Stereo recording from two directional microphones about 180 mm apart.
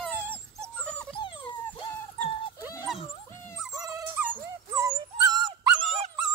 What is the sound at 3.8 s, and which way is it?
Dog, 20° right (ahead or behind).